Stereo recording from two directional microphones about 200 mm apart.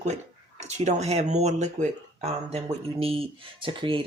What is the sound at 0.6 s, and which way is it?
Speech, 35° right (ahead or behind).